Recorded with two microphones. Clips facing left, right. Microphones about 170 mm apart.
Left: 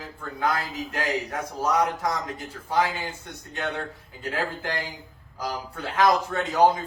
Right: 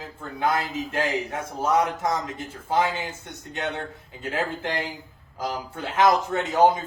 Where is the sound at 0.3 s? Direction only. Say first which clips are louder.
Right 2 dB; 25° right (ahead or behind).